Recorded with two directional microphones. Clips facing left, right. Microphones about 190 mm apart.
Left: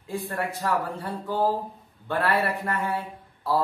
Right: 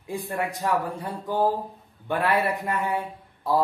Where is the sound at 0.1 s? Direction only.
15° right (ahead or behind).